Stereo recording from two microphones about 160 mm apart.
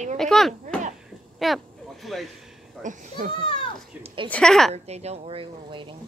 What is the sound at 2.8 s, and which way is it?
Speech, 50° right (ahead or behind).